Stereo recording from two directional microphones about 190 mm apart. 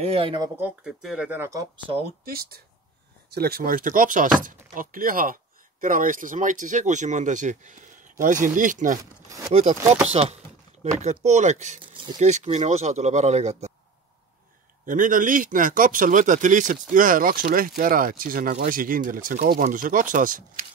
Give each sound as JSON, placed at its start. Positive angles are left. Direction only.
{"t": 0.0, "sound": "speech", "side_deg": -30}
{"t": 0.6, "sound": "speech", "side_deg": -5}
{"t": 2.2, "sound": "speech", "side_deg": -50}
{"t": 11.9, "sound": "a sound", "side_deg": -25}
{"t": 12.2, "sound": "speech", "side_deg": -40}
{"t": 14.9, "sound": "speech", "side_deg": -45}